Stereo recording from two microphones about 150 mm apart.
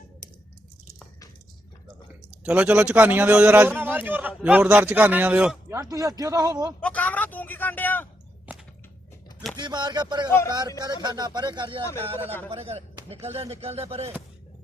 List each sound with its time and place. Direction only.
2.4 s a man's voice: 10° right (ahead or behind)
5.6 s a man's voice: 20° right (ahead or behind)
6.8 s a man's voice: 10° left (ahead or behind)
9.6 s a man's voice: 30° right (ahead or behind)
12.2 s a man's voice: 15° left (ahead or behind)
12.5 s speech: 40° right (ahead or behind)